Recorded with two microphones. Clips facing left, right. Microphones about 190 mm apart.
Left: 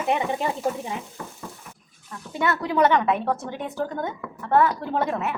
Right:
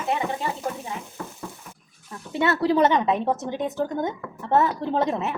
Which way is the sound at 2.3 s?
25° right (ahead or behind).